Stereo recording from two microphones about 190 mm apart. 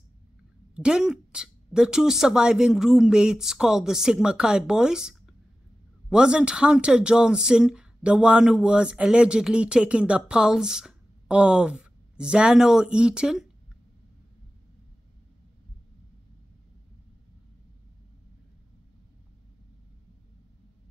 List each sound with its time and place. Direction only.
0.7 s speech: 5° right (ahead or behind)